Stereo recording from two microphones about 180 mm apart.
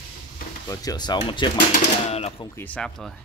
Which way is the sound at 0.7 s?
20° left (ahead or behind).